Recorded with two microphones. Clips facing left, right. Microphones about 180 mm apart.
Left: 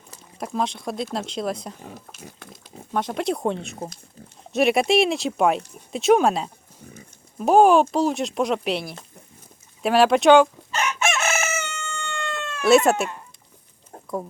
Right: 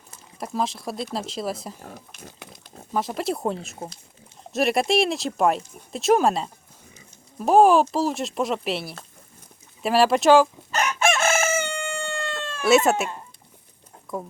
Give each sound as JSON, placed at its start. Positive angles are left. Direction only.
{"t": 0.3, "sound": "speech", "side_deg": 0}
{"t": 10.7, "sound": "chicken", "side_deg": -40}
{"t": 12.6, "sound": "speech", "side_deg": 0}